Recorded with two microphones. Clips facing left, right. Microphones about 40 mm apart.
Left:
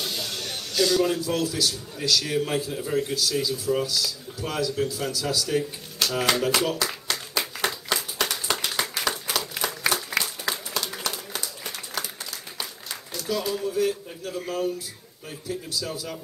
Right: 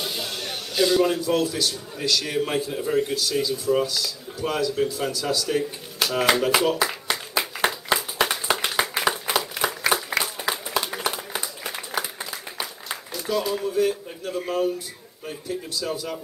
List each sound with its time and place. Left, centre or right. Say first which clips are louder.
0.0 s a man's voice: right 1 dB; centre
6.2 s a sound: right 4 dB; centre
9.4 s applause: right 2 dB; centre
13.1 s a man's voice: right 2 dB; centre